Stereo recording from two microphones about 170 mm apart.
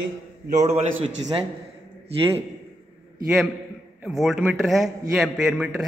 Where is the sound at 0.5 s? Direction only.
40° right (ahead or behind).